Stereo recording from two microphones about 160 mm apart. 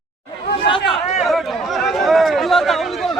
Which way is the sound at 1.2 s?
Centre (ahead or behind).